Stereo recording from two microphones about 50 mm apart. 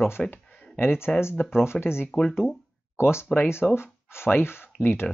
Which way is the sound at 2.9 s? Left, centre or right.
Left.